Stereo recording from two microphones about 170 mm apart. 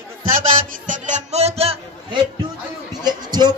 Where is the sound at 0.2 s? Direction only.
50° right (ahead or behind); by 2.2 s 30° right (ahead or behind).